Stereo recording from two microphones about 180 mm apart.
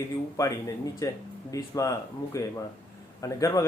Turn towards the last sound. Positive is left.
turn(degrees=20)  # may be behind; listen again after turning